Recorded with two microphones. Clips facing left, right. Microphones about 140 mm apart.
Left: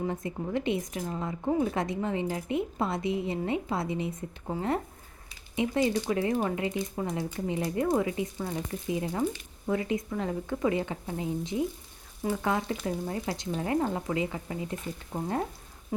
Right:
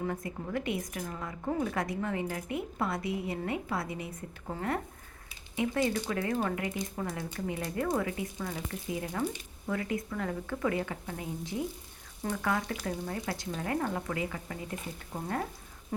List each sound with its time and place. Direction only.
0.0 s a woman's voice: 25° left (ahead or behind)